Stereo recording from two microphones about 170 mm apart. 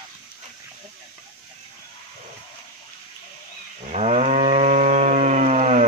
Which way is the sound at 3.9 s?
40° right (ahead or behind).